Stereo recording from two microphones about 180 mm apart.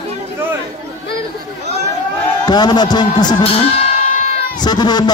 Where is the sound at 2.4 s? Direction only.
25° left (ahead or behind).